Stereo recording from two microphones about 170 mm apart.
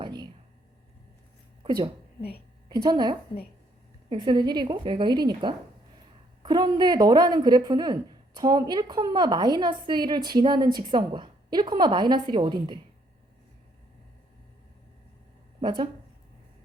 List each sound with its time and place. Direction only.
0.0 s a sound: 25° right (ahead or behind)
1.6 s a woman's voice: 25° right (ahead or behind)
15.6 s a woman's voice: 25° right (ahead or behind)